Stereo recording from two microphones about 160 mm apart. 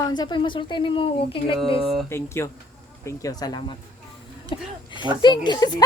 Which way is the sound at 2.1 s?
15° left (ahead or behind).